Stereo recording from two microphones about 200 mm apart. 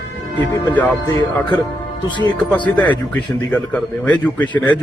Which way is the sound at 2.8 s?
10° left (ahead or behind).